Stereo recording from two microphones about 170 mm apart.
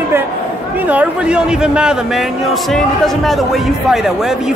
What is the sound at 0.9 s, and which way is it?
A man's voice, 5° right (ahead or behind).